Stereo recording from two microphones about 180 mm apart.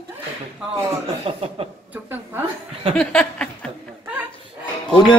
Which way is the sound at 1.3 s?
30° right (ahead or behind).